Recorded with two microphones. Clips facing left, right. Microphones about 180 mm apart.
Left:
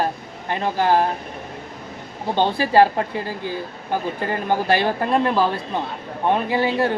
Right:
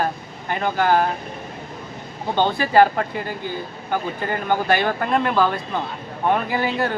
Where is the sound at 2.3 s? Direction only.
30° left (ahead or behind).